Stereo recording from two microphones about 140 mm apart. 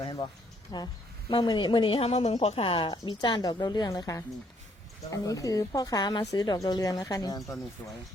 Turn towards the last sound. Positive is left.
turn(degrees=25)  # may be behind; listen again after turning